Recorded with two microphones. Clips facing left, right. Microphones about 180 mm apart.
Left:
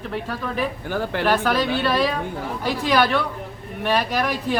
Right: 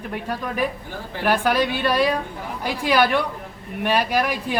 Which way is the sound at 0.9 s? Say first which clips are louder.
Left 8 dB; 75° left (ahead or behind).